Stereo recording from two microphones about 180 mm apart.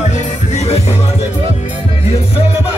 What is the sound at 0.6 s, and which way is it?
Music, 35° left (ahead or behind).